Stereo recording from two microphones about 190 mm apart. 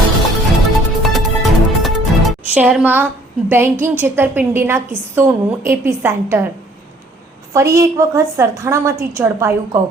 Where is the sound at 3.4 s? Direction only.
10° right (ahead or behind).